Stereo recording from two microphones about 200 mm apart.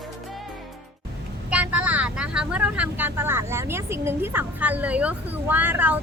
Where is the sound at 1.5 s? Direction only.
5° right (ahead or behind).